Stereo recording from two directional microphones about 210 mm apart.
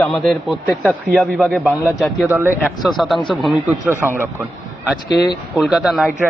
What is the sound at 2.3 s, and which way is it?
Speech, 10° right (ahead or behind).